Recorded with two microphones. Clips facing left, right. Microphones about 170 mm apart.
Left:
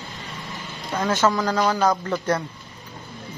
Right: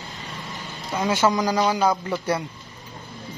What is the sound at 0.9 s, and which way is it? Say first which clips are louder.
Speech: even; 10° right (ahead or behind).